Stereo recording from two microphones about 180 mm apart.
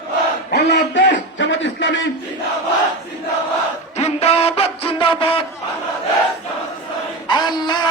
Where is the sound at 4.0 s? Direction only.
35° left (ahead or behind).